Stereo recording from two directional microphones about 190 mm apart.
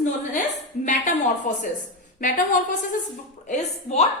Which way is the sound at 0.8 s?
40° left (ahead or behind).